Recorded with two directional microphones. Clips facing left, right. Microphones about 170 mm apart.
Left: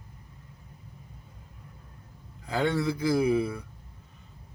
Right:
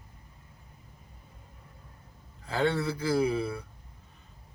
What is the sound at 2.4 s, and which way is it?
Speech, 15° left (ahead or behind).